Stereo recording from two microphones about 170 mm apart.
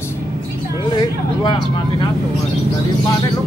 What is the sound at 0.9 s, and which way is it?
Speech, 25° left (ahead or behind).